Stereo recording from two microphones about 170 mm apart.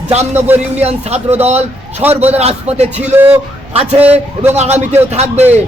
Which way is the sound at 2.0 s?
10° right (ahead or behind).